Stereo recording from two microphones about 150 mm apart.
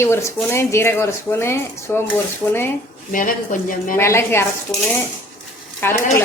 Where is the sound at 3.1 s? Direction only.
65° left (ahead or behind).